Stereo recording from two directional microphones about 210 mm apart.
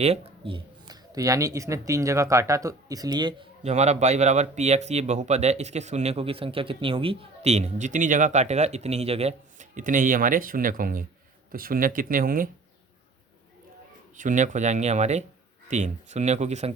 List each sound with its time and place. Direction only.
0.0 s speech: 25° right (ahead or behind)
14.2 s speech: 35° right (ahead or behind)